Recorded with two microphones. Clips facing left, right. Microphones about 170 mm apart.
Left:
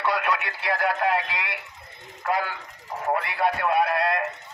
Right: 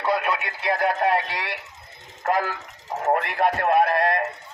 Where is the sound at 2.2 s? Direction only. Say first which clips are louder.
Right 3 dB; 45° right (ahead or behind).